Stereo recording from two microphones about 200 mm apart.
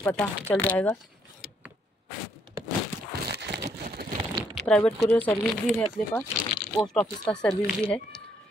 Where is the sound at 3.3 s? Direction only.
60° right (ahead or behind).